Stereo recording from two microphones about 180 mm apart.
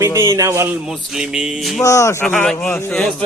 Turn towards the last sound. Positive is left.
turn(degrees=5)  # may be behind; listen again after turning